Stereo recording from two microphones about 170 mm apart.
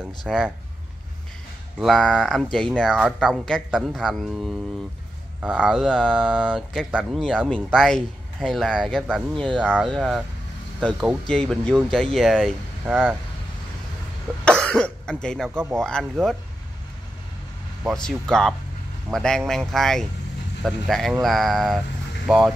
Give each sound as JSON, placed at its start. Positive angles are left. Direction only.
{"t": 0.2, "sound": "speech", "side_deg": 0}
{"t": 1.8, "sound": "speech", "side_deg": 0}
{"t": 9.6, "sound": "speech", "side_deg": -10}
{"t": 10.8, "sound": "speech", "side_deg": 5}
{"t": 12.8, "sound": "speech", "side_deg": -5}
{"t": 14.3, "sound": "speech", "side_deg": 0}
{"t": 17.8, "sound": "speech", "side_deg": 5}